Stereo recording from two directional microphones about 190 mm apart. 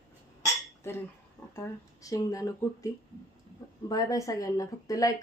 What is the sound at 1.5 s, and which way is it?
A woman's voice, 15° left (ahead or behind).